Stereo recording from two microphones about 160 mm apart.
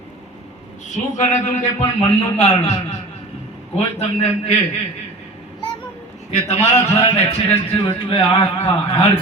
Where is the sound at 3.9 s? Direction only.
40° left (ahead or behind).